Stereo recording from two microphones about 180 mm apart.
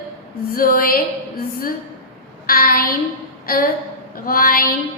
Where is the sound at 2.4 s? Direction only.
55° left (ahead or behind).